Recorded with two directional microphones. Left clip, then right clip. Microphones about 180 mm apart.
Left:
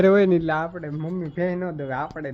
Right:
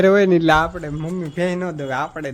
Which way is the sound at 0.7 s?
15° right (ahead or behind).